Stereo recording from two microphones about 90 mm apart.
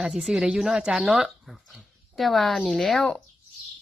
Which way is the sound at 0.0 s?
10° right (ahead or behind).